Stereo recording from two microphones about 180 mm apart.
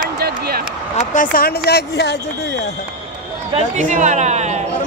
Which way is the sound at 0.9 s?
45° left (ahead or behind).